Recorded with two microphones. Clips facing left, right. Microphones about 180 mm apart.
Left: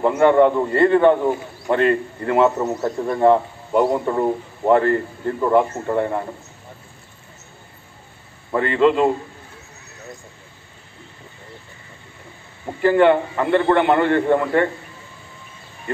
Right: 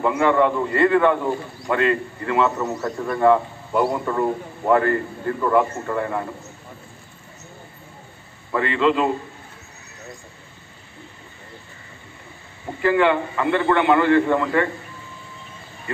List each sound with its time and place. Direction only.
0.0 s a man's voice: 45° left (ahead or behind)
1.7 s a man's voice: 45° left (ahead or behind)
2.6 s a man's voice: 25° left (ahead or behind)
8.5 s a man's voice: 45° left (ahead or behind)
12.8 s a man's voice: 45° left (ahead or behind)